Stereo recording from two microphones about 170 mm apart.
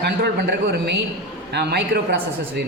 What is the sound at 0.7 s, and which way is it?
Speech, 85° right.